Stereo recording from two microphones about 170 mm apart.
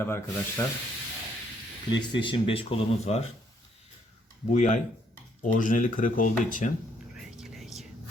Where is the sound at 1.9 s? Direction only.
25° left (ahead or behind).